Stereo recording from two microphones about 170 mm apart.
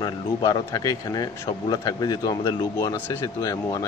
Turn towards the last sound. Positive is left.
turn(degrees=20)  # may be behind; listen again after turning